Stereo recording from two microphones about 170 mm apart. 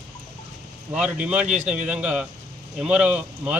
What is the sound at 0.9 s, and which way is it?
Speech, 5° right (ahead or behind).